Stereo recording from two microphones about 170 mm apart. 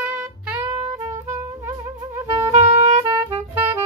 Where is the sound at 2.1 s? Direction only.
15° right (ahead or behind).